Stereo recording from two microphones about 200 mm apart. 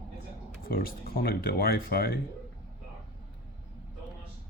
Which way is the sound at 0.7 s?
50° left (ahead or behind).